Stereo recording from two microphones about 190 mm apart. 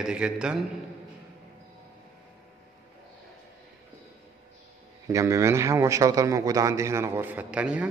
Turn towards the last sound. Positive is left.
turn(degrees=-5)  # may be behind; listen again after turning